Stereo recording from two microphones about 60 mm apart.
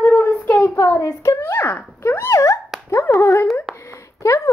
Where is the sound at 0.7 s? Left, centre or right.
Left.